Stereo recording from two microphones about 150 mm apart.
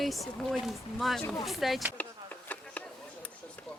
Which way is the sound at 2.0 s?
10° left (ahead or behind).